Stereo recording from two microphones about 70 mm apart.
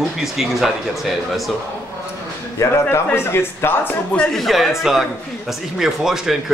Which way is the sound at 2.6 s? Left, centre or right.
Left.